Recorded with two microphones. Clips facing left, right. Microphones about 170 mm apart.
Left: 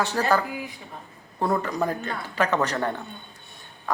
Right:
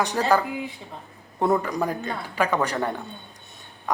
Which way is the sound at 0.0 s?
15° right (ahead or behind).